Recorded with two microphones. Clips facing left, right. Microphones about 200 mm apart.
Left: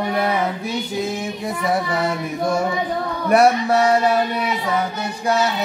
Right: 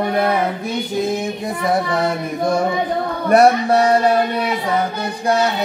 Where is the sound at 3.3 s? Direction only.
35° right (ahead or behind).